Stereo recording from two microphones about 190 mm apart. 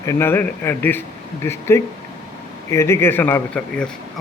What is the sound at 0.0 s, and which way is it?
A man's voice, 15° left (ahead or behind).